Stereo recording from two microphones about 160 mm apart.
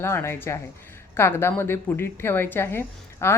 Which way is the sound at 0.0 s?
15° left (ahead or behind).